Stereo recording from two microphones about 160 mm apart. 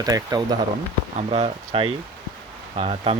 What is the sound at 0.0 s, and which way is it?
Speech, 25° right (ahead or behind).